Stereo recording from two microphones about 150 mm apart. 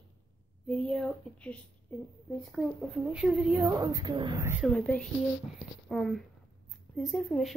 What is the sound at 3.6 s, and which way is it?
Speech, 20° right (ahead or behind).